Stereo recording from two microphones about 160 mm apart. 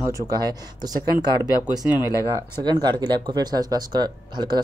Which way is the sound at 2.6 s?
25° right (ahead or behind).